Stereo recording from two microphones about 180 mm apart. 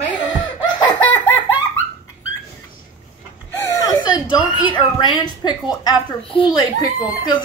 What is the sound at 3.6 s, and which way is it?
A woman's voice, 20° left (ahead or behind).